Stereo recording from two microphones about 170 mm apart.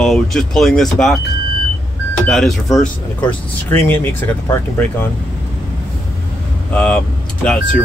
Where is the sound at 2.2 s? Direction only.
Centre (ahead or behind).